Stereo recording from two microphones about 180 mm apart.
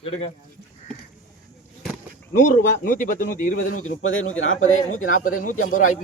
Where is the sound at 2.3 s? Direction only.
50° left (ahead or behind).